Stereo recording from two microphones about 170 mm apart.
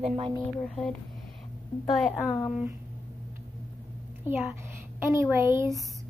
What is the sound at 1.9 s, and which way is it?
Speech, centre (ahead or behind).